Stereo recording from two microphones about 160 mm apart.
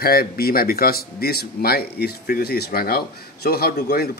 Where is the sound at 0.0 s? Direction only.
70° left (ahead or behind).